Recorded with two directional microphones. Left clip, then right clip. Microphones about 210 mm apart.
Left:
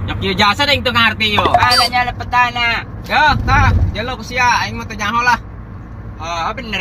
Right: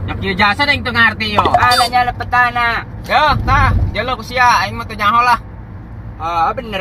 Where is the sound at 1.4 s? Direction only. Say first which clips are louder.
Right 2 dB; centre (ahead or behind).